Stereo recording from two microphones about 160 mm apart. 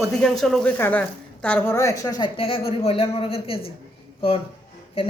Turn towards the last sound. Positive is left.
turn(degrees=35)  # may be behind; listen again after turning